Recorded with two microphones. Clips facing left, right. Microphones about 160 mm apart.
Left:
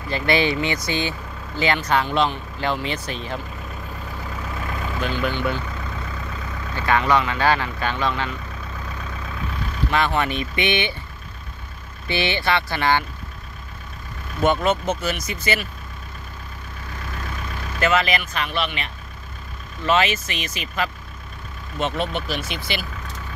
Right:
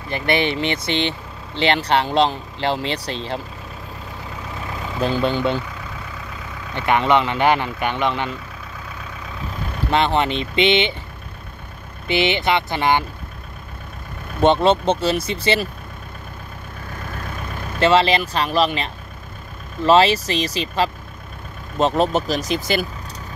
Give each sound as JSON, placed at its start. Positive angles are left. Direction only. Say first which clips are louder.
{"t": 0.1, "sound": "speech", "louder": "even", "side_deg": -20}
{"t": 5.0, "sound": "speech", "louder": "right 6 dB", "side_deg": -35}
{"t": 6.7, "sound": "speech", "louder": "right 2 dB", "side_deg": -20}
{"t": 9.8, "sound": "speech", "louder": "right 3 dB", "side_deg": -25}
{"t": 12.1, "sound": "speech", "louder": "right 3 dB", "side_deg": -20}
{"t": 14.4, "sound": "speech", "louder": "right 5 dB", "side_deg": -30}
{"t": 17.7, "sound": "speech", "louder": "right 5 dB", "side_deg": -30}